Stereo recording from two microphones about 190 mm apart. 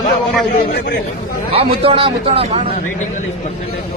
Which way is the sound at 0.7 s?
60° left (ahead or behind).